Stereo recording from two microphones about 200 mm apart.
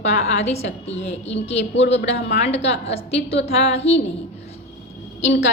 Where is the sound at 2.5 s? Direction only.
30° left (ahead or behind).